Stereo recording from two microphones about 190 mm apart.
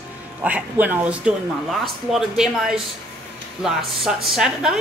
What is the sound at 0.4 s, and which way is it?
A woman's voice, 10° right (ahead or behind).